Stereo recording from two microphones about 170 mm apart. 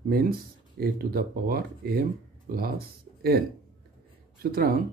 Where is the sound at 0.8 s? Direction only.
65° right (ahead or behind).